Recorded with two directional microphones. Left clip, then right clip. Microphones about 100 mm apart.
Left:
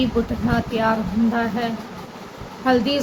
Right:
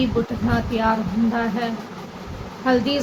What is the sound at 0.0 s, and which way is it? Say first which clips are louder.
A woman's voice: even; 20° left (ahead or behind).